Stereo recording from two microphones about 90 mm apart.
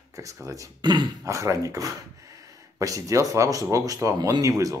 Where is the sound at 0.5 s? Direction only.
35° right (ahead or behind).